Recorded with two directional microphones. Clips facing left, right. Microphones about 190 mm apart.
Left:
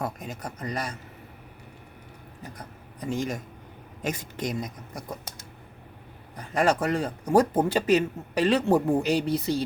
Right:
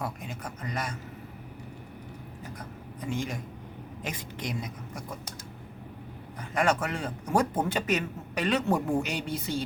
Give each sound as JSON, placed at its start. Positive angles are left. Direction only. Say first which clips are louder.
{"t": 0.0, "sound": "a man's voice", "louder": "left 3 dB", "side_deg": 40}
{"t": 3.1, "sound": "a man's voice", "louder": "left 4 dB", "side_deg": 40}
{"t": 6.5, "sound": "a man's voice", "louder": "left 4 dB", "side_deg": 35}